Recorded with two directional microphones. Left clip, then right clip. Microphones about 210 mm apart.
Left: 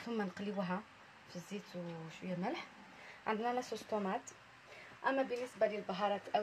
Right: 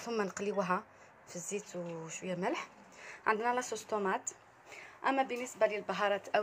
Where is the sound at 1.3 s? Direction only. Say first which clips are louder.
Right 8 dB; 35° right (ahead or behind).